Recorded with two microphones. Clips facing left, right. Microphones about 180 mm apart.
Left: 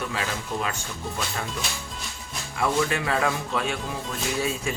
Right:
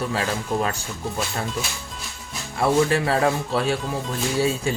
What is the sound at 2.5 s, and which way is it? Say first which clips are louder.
Speech: right 5 dB; 35° right (ahead or behind).